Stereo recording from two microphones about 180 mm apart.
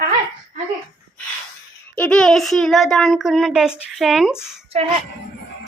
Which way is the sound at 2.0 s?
5° left (ahead or behind).